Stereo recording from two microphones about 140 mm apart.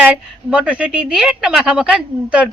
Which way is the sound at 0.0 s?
10° right (ahead or behind).